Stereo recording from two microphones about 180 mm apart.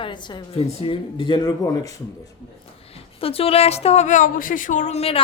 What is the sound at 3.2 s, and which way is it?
Speech, 30° left (ahead or behind).